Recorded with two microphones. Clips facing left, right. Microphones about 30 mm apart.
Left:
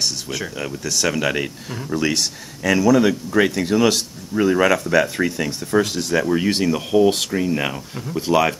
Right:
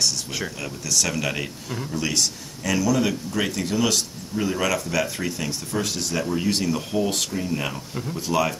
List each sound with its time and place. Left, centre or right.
0.6 s speech: left
5.7 s speech: left